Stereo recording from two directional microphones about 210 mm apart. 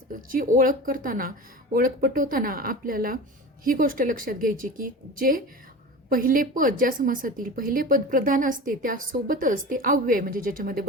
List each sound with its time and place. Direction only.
0.1 s a woman's voice: 40° right (ahead or behind)